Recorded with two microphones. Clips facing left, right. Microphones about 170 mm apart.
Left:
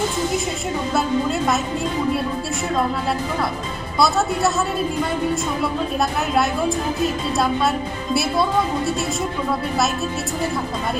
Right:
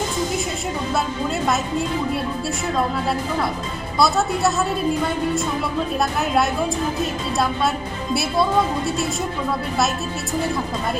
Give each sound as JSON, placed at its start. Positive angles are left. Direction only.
{"t": 4.0, "sound": "a woman's voice", "side_deg": 0}
{"t": 6.0, "sound": "a woman's voice", "side_deg": 0}